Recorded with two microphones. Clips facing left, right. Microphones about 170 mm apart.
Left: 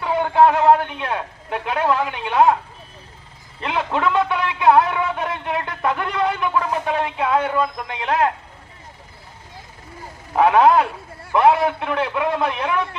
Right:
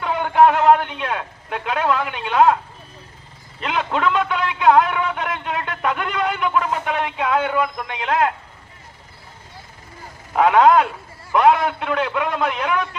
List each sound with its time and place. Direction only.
0.1 s a sound: 30° left (ahead or behind)
0.9 s speech: 25° left (ahead or behind)
3.6 s a man's voice: 25° left (ahead or behind)
10.3 s a man's voice: 25° left (ahead or behind)